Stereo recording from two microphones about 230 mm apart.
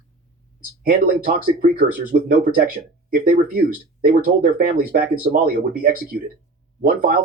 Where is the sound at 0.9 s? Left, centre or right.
Right.